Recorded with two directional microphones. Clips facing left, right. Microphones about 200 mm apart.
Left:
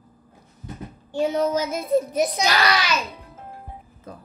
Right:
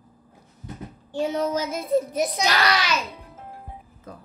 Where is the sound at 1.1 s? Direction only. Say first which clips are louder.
Left 3 dB; 15° left (ahead or behind).